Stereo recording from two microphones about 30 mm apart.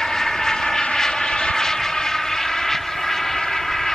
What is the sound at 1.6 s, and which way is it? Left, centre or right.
Vehicle, centre.